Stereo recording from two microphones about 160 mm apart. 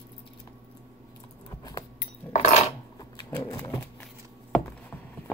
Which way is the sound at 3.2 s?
25° left (ahead or behind).